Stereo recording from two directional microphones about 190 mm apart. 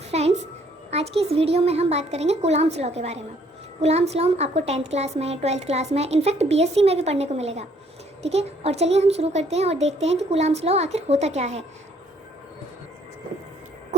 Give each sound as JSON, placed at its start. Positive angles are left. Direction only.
{"t": 0.1, "sound": "music", "side_deg": -35}
{"t": 0.9, "sound": "a woman's voice", "side_deg": -35}